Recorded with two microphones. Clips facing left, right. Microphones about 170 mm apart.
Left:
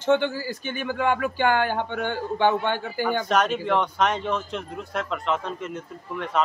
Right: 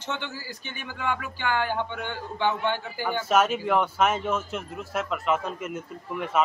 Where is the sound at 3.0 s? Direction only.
5° right (ahead or behind).